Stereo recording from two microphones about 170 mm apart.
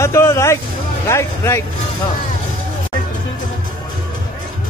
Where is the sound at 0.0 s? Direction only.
15° left (ahead or behind).